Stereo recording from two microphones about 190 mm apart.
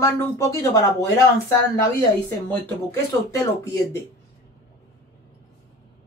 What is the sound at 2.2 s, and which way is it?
Speech, 10° left (ahead or behind).